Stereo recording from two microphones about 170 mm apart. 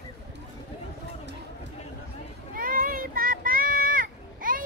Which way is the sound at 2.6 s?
55° right (ahead or behind).